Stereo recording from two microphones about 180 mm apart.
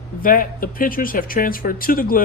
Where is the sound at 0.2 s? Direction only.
50° left (ahead or behind).